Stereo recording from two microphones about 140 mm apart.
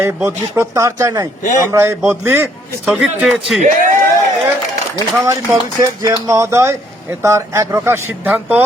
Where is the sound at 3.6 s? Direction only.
70° right (ahead or behind).